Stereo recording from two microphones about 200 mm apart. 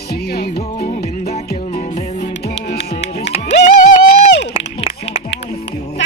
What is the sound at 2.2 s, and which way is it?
Music, 55° left (ahead or behind).